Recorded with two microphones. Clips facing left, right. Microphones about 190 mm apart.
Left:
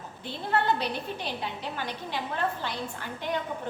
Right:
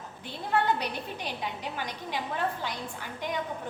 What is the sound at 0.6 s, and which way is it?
Speech, 15° right (ahead or behind).